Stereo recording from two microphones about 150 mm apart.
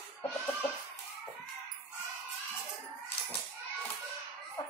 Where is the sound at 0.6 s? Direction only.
5° left (ahead or behind).